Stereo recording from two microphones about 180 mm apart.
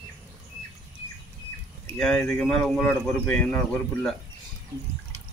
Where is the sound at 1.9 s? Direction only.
5° left (ahead or behind).